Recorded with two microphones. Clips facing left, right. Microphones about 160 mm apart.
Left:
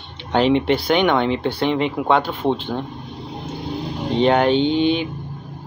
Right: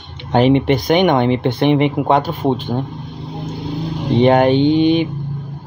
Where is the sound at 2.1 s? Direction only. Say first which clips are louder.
Right 3 dB; 40° right (ahead or behind).